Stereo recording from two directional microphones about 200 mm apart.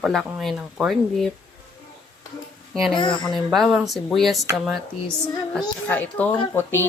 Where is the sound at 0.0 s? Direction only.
Centre (ahead or behind).